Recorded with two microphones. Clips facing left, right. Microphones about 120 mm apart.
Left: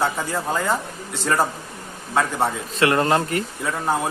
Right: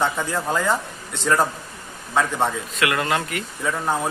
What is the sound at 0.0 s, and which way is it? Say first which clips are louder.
Speech: even; 5° left (ahead or behind).